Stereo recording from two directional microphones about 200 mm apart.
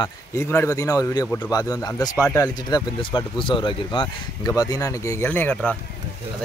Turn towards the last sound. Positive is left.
turn(degrees=10)  # may be behind; listen again after turning